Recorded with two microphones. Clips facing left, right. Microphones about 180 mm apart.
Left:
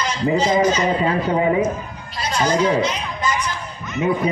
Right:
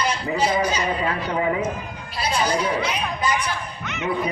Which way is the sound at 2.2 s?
10° right (ahead or behind).